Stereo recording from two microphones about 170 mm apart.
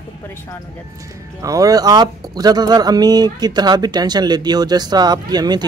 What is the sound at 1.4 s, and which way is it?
Speech, 20° right (ahead or behind).